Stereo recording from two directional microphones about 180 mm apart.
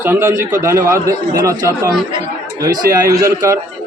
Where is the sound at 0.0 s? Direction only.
15° right (ahead or behind).